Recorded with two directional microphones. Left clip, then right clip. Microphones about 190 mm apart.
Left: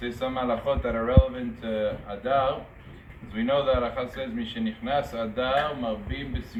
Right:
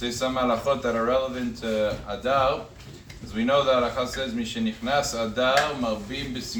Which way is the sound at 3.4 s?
15° right (ahead or behind).